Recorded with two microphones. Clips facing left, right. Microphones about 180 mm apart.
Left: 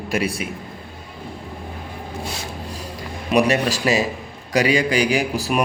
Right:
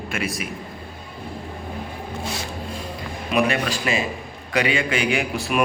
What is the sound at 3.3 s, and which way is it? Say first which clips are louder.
A man's voice: left 4 dB; 40° left (ahead or behind).